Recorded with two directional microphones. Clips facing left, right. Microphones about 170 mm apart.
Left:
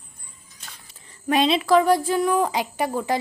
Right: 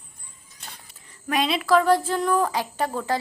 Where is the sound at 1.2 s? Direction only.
25° left (ahead or behind).